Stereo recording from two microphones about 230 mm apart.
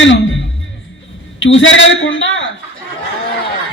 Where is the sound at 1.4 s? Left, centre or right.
Left.